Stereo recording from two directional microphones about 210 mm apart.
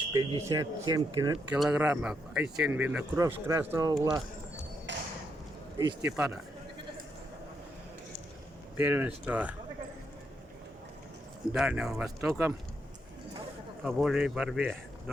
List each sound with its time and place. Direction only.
0.1 s speech: 15° right (ahead or behind)
1.5 s speech: 5° right (ahead or behind)
4.9 s a sound: 60° right (ahead or behind)
6.0 s speech: 5° right (ahead or behind)
8.8 s speech: 10° right (ahead or behind)
11.5 s speech: 5° right (ahead or behind)
12.2 s speech: 15° right (ahead or behind)
13.8 s speech: centre (ahead or behind)